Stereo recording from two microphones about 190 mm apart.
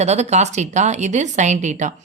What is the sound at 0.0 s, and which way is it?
A woman's voice, 35° right (ahead or behind).